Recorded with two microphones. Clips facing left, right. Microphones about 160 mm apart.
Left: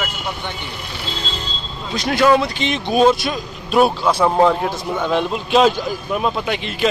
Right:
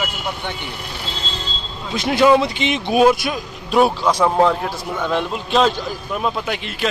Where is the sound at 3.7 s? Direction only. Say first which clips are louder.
Even; 10° left (ahead or behind).